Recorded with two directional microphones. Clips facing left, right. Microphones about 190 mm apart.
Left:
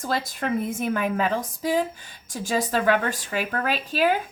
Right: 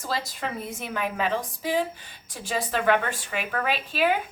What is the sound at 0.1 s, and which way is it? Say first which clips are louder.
A woman's voice: left 5 dB; 50° left (ahead or behind).